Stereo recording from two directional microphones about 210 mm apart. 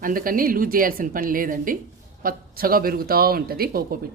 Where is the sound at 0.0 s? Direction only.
40° right (ahead or behind).